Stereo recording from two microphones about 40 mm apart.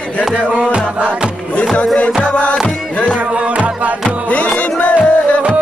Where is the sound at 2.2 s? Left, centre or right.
Left.